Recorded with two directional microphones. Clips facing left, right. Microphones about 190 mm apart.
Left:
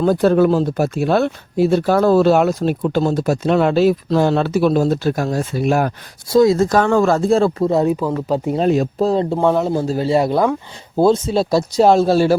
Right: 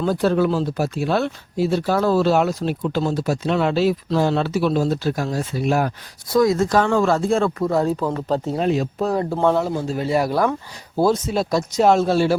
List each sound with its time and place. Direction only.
0.0 s speech: 50° left (ahead or behind)
6.2 s speech: 30° left (ahead or behind)
6.7 s speech: 45° left (ahead or behind); by 7.9 s 20° left (ahead or behind)
7.9 s speech: 10° left (ahead or behind)
8.6 s speech: 50° left (ahead or behind)
9.0 s speech: 25° left (ahead or behind)
9.7 s speech: 35° left (ahead or behind)